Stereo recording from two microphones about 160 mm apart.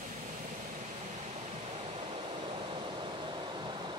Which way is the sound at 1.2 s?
40° right (ahead or behind).